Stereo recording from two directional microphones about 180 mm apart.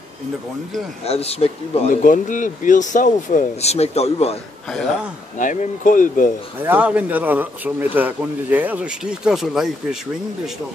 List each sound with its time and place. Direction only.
1.0 s speech: 35° left (ahead or behind)
4.6 s speech: 5° left (ahead or behind)
5.4 s speech: 45° left (ahead or behind)
6.6 s a man's voice: 10° right (ahead or behind)